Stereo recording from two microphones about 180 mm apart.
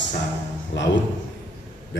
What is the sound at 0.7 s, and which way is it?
Speech, 75° left (ahead or behind).